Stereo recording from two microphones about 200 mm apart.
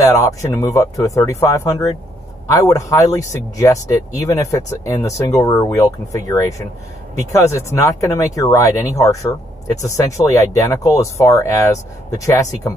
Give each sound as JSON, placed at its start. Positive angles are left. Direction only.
{"t": 0.0, "sound": "speech", "side_deg": 15}